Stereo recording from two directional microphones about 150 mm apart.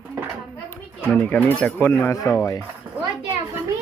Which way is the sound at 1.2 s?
10° left (ahead or behind).